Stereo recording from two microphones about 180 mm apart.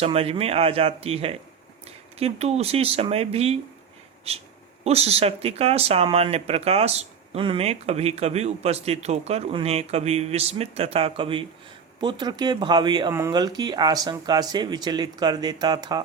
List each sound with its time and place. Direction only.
0.0 s speech: 35° right (ahead or behind)